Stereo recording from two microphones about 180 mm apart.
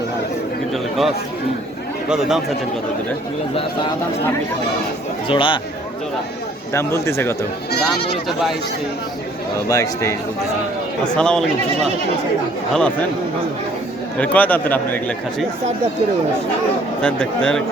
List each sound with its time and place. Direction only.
0.7 s a sound: centre (ahead or behind)
3.5 s speech: 30° left (ahead or behind)
5.3 s speech: 30° left (ahead or behind)
6.7 s a man's voice: 15° left (ahead or behind)
8.3 s speech: centre (ahead or behind)
9.6 s a man's voice: 20° left (ahead or behind)
11.1 s speech: 5° left (ahead or behind)
12.7 s a man's voice: 5° left (ahead or behind)
14.2 s a man's voice: 10° left (ahead or behind)
17.0 s speech: 5° left (ahead or behind)